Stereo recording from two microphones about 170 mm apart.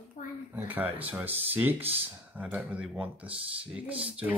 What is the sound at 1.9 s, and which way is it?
Speech, 35° right (ahead or behind).